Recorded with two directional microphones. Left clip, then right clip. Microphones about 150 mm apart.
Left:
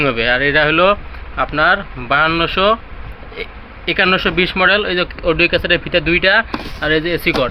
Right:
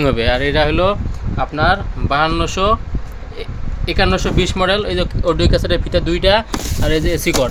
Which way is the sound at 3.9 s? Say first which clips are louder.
Left 3 dB; 10° right (ahead or behind).